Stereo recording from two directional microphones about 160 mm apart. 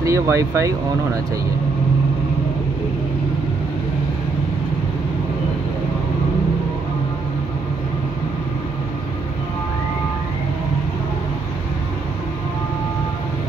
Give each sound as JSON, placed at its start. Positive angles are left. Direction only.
{"t": 0.0, "sound": "speech", "side_deg": -20}